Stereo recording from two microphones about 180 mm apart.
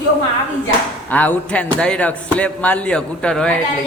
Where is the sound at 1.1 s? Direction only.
10° left (ahead or behind).